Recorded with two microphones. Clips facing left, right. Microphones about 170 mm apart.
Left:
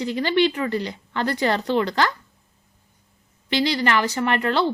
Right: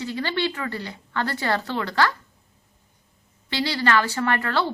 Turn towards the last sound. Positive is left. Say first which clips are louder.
# left 2 dB
turn(degrees=20)  # may be behind; listen again after turning